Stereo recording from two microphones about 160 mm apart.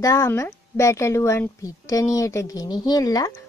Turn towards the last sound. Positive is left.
turn(degrees=25)  # may be behind; listen again after turning